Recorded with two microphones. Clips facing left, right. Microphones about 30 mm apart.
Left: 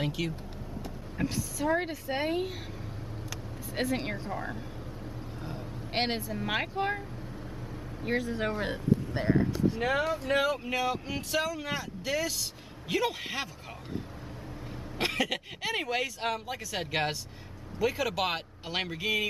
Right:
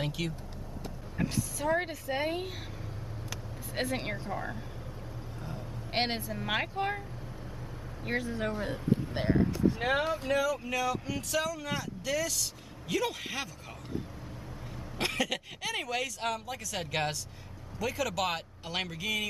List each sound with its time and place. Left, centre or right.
0.0 s speech: centre
2.0 s speech: centre
3.3 s vehicle: centre
4.3 s speech: centre
5.9 s speech: centre
8.0 s speech: centre
9.8 s speech: centre
10.2 s speech: left
10.6 s speech: left
15.0 s speech: centre